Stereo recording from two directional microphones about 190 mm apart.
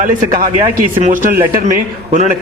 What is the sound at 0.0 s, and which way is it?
Speech, 50° right (ahead or behind).